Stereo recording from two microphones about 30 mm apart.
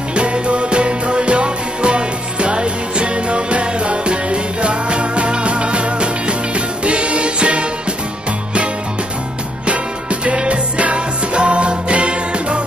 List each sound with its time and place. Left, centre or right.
0.1 s music: right
10.2 s music: right